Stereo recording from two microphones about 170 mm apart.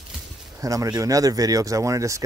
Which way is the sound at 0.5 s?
20° right (ahead or behind).